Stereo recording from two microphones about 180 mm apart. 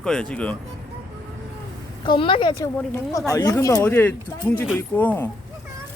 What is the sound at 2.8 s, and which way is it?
Speech, 10° left (ahead or behind).